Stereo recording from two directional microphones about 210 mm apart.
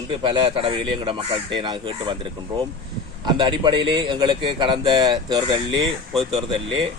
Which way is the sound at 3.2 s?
20° right (ahead or behind).